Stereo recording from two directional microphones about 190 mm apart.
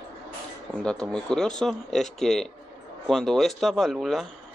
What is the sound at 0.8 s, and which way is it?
Speech, 5° left (ahead or behind).